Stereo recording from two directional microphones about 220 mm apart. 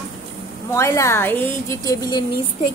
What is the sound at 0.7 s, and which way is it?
A woman's voice, 10° left (ahead or behind).